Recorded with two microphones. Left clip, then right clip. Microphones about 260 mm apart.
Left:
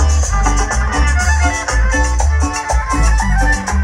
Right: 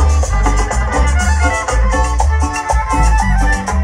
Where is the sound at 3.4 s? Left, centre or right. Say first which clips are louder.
Even; right.